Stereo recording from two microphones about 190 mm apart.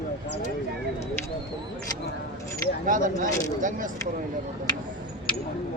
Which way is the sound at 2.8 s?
45° right (ahead or behind).